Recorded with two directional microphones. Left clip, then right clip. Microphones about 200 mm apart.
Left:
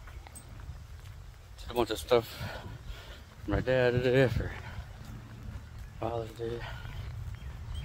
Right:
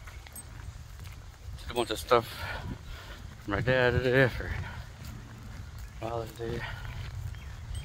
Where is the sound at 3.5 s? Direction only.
15° left (ahead or behind).